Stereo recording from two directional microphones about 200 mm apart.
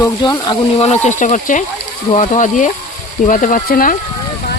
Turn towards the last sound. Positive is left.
turn(degrees=45)  # may be behind; listen again after turning